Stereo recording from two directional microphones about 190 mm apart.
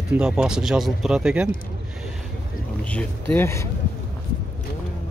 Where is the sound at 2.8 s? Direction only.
10° left (ahead or behind).